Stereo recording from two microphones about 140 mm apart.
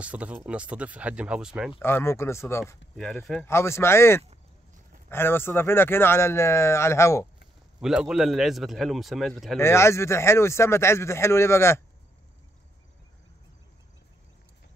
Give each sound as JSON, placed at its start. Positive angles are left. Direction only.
{"t": 0.0, "sound": "speech", "side_deg": -10}
{"t": 1.8, "sound": "speech", "side_deg": 15}
{"t": 3.0, "sound": "a man's voice", "side_deg": 0}
{"t": 3.4, "sound": "speech", "side_deg": 20}
{"t": 7.8, "sound": "a man's voice", "side_deg": -5}
{"t": 9.6, "sound": "speech", "side_deg": 20}